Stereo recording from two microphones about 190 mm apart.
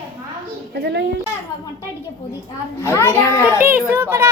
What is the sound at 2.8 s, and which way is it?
Speech, 15° left (ahead or behind).